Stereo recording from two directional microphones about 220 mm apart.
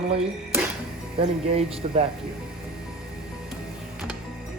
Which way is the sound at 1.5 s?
25° right (ahead or behind).